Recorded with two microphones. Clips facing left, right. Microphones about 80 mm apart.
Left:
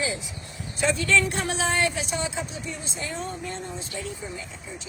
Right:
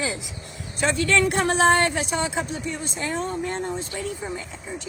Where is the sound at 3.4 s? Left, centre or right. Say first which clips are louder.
Right 6 dB; right.